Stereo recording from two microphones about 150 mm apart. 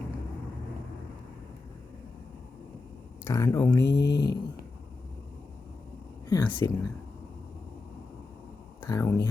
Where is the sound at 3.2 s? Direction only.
20° left (ahead or behind).